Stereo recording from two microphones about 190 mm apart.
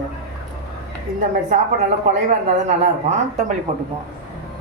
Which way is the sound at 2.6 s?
35° right (ahead or behind).